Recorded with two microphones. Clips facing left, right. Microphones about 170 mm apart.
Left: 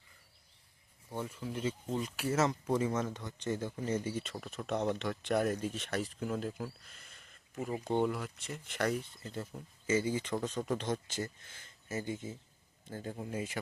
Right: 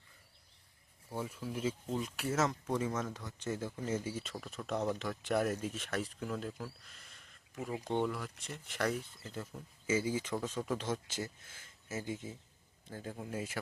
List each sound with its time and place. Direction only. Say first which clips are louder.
1.1 s speech: left 1 dB; 5° right (ahead or behind)